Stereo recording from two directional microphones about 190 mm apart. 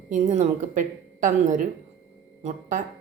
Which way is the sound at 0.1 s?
40° right (ahead or behind).